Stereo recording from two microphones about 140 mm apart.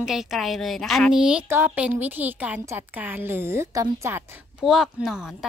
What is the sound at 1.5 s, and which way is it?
A woman's voice, 15° right (ahead or behind).